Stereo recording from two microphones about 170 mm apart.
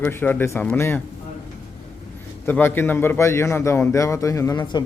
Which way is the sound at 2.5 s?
10° left (ahead or behind).